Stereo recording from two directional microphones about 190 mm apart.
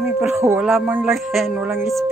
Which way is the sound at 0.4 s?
15° right (ahead or behind).